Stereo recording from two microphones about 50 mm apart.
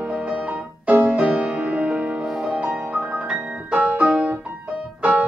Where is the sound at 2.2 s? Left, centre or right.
Centre.